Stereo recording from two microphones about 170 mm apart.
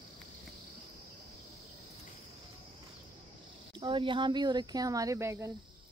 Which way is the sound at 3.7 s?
30° right (ahead or behind).